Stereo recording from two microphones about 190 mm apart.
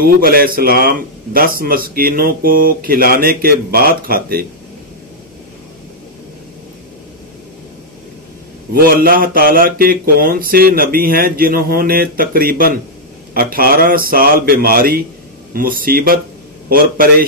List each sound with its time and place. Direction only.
0.0 s speech: 50° right (ahead or behind)
8.7 s speech: 50° right (ahead or behind)